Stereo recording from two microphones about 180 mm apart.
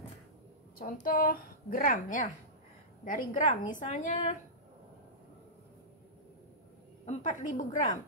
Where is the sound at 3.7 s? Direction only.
45° left (ahead or behind).